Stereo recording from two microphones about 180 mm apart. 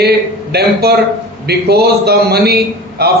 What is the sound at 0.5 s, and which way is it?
A man's voice, 60° right (ahead or behind).